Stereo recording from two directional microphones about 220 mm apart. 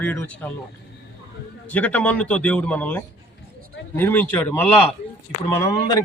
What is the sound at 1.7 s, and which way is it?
Speech, 5° left (ahead or behind).